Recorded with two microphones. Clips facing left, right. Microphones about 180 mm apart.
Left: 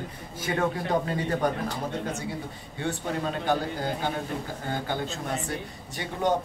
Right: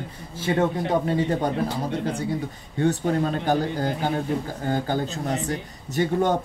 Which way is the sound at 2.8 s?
40° right (ahead or behind).